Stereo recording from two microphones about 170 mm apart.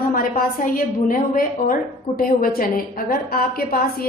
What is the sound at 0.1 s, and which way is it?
A woman's voice, 55° left (ahead or behind).